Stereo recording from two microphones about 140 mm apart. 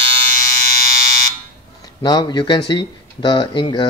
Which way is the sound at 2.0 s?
30° left (ahead or behind).